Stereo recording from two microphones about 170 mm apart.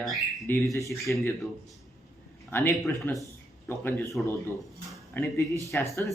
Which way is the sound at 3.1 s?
10° left (ahead or behind).